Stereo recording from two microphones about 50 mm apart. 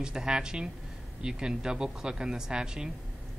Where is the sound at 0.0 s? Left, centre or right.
Centre.